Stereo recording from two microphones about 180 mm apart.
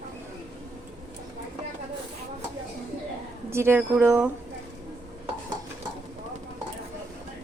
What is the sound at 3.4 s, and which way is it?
Speech, 15° right (ahead or behind).